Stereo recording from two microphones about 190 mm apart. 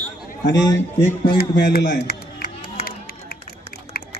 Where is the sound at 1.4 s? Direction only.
60° left (ahead or behind).